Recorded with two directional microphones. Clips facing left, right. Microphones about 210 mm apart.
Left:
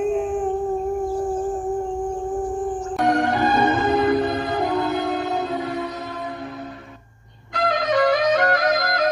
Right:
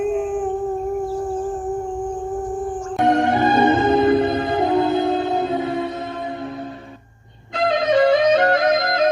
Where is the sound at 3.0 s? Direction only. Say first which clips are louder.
Right 3 dB; 25° right (ahead or behind).